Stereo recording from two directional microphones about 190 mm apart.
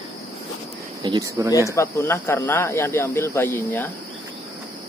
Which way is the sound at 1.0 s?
20° right (ahead or behind).